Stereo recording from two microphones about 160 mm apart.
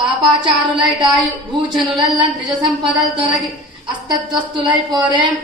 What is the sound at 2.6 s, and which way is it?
A woman's voice, 30° right (ahead or behind).